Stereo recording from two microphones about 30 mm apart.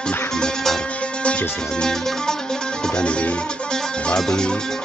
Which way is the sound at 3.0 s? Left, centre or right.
Left.